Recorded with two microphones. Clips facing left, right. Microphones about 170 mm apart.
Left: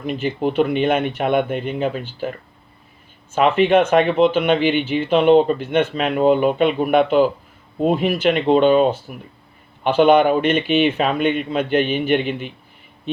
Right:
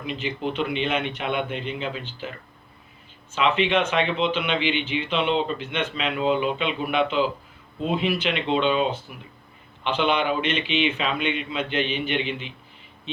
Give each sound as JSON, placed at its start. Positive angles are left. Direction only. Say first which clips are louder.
{"t": 0.0, "sound": "speech", "louder": "left 7 dB", "side_deg": 45}
{"t": 3.3, "sound": "speech", "louder": "left 7 dB", "side_deg": 50}